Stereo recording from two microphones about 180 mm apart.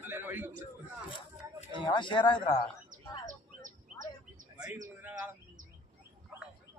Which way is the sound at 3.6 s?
45° right (ahead or behind).